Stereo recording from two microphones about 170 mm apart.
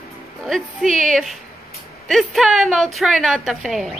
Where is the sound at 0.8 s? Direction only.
50° right (ahead or behind).